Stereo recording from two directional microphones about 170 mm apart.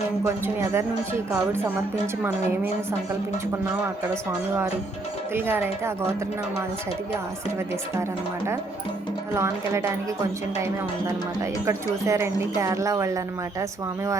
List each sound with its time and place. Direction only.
0.4 s speech: 15° right (ahead or behind)
5.3 s speech: 15° right (ahead or behind)
9.3 s speech: 15° right (ahead or behind)
11.6 s speech: 15° right (ahead or behind)